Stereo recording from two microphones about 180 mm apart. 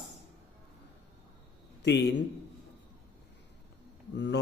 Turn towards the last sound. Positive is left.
turn(degrees=75)  # may be behind; listen again after turning